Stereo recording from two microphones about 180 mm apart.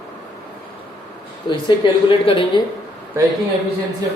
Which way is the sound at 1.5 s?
25° left (ahead or behind).